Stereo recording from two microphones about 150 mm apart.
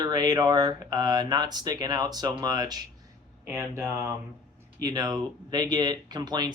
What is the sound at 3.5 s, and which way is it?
Speech, 15° right (ahead or behind).